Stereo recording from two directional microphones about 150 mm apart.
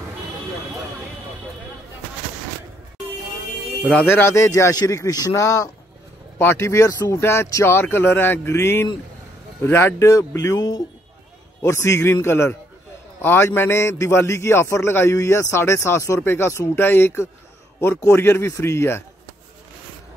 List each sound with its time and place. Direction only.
3.9 s a man's voice: 15° left (ahead or behind)